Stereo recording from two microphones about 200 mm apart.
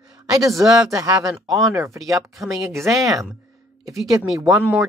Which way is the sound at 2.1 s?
Centre (ahead or behind).